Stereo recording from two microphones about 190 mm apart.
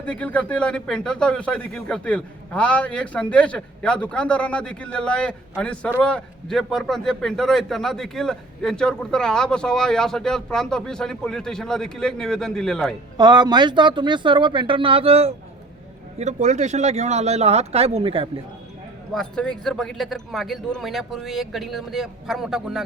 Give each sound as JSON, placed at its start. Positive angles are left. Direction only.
{"t": 0.0, "sound": "a man's voice", "side_deg": 5}
{"t": 13.1, "sound": "speech", "side_deg": -20}
{"t": 19.1, "sound": "a man's voice", "side_deg": 5}